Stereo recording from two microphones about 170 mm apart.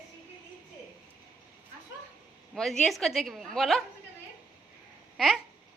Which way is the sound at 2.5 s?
Centre (ahead or behind).